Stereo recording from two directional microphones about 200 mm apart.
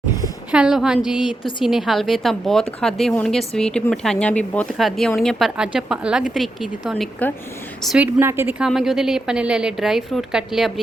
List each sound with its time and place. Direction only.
0.5 s a woman's voice: 5° right (ahead or behind)
7.8 s a woman's voice: 5° right (ahead or behind)